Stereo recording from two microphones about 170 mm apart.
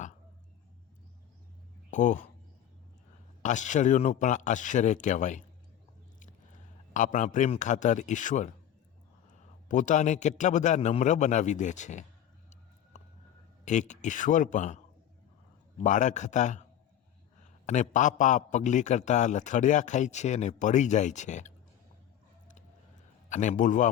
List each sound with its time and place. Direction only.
1.9 s speech: 50° left (ahead or behind)
3.4 s a man's voice: 45° left (ahead or behind)
6.9 s a man's voice: 50° left (ahead or behind)
9.6 s a man's voice: 50° left (ahead or behind)
12.9 s a sound: 45° left (ahead or behind)
13.7 s a man's voice: 45° left (ahead or behind)
15.8 s a man's voice: 45° left (ahead or behind)
17.7 s a man's voice: 45° left (ahead or behind)
23.3 s a man's voice: 45° left (ahead or behind)